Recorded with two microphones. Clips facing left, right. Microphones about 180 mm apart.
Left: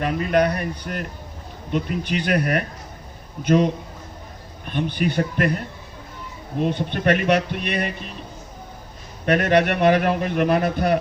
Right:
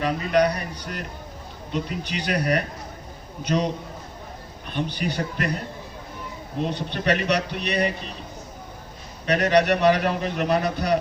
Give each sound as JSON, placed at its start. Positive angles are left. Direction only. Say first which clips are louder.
{"t": 0.0, "sound": "a man's voice", "louder": "left 1 dB", "side_deg": 50}
{"t": 4.7, "sound": "a man's voice", "louder": "left 4 dB", "side_deg": 55}
{"t": 6.7, "sound": "a man's voice", "louder": "left 4 dB", "side_deg": 50}
{"t": 9.2, "sound": "a man's voice", "louder": "left 2 dB", "side_deg": 50}